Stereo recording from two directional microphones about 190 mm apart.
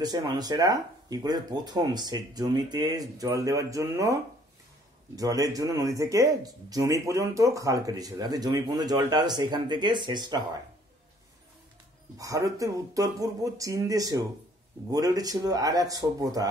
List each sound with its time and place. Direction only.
0.0 s speech: 20° right (ahead or behind)
12.2 s speech: 15° right (ahead or behind)